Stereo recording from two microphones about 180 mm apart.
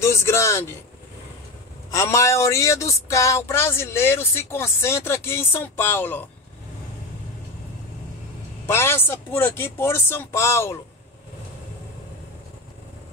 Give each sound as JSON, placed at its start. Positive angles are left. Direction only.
{"t": 0.0, "sound": "speech", "side_deg": 15}
{"t": 1.9, "sound": "speech", "side_deg": 15}
{"t": 8.6, "sound": "speech", "side_deg": 15}